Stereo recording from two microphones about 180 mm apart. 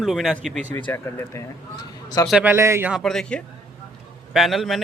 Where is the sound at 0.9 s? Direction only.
15° left (ahead or behind).